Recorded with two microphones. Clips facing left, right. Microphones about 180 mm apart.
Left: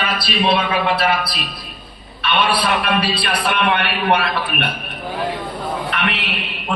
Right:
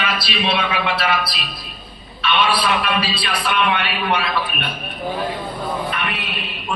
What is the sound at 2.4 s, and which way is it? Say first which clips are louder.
A man's voice: left 1 dB; 55° left (ahead or behind).